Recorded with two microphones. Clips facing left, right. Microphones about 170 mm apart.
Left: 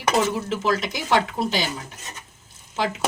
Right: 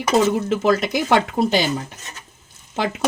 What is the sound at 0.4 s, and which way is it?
Speech, 50° right (ahead or behind).